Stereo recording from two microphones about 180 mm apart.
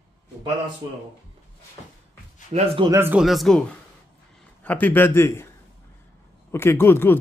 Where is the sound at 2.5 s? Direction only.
30° right (ahead or behind).